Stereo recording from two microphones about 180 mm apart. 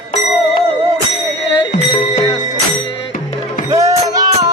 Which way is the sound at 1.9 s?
25° left (ahead or behind).